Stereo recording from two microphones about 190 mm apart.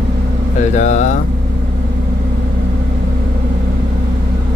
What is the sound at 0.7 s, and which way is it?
Speech, 40° left (ahead or behind).